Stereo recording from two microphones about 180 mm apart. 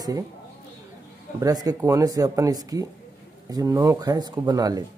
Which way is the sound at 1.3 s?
20° right (ahead or behind).